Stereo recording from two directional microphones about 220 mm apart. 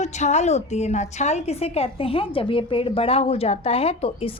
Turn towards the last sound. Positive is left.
turn(degrees=25)  # may be behind; listen again after turning